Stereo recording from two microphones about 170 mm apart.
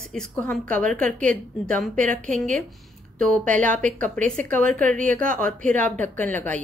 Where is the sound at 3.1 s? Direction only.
5° left (ahead or behind).